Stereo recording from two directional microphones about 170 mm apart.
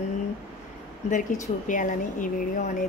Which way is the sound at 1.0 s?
50° left (ahead or behind).